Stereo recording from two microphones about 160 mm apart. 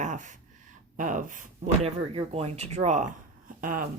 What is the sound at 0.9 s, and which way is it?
Speech, 50° right (ahead or behind).